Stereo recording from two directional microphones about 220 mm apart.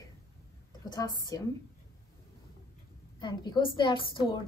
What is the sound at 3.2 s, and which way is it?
A woman's voice, 20° left (ahead or behind).